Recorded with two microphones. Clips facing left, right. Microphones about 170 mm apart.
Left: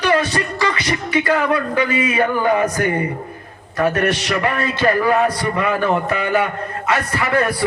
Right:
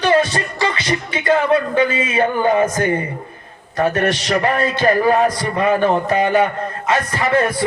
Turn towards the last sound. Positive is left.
turn(degrees=-25)  # may be behind; listen again after turning